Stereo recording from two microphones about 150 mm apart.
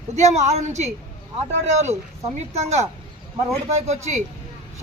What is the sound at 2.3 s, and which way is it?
A woman's voice, 45° right (ahead or behind).